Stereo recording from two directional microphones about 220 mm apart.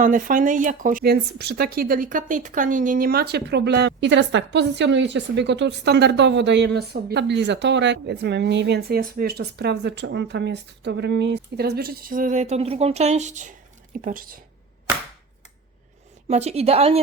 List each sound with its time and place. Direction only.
0.0 s a woman's voice: 35° right (ahead or behind)
16.3 s a woman's voice: 30° right (ahead or behind)